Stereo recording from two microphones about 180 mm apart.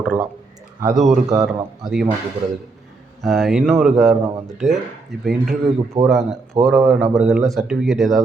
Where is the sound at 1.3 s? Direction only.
20° right (ahead or behind).